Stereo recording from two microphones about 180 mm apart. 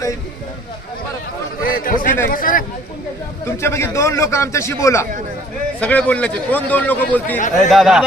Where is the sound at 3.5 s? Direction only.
15° left (ahead or behind); by 8.1 s centre (ahead or behind).